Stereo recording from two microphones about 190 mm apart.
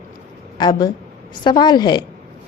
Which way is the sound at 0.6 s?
20° left (ahead or behind).